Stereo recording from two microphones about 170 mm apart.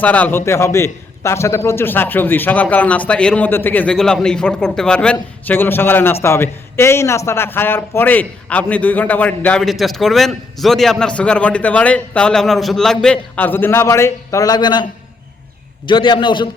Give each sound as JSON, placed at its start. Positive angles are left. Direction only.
{"t": 0.0, "sound": "a man's voice", "side_deg": 10}
{"t": 15.9, "sound": "a man's voice", "side_deg": 30}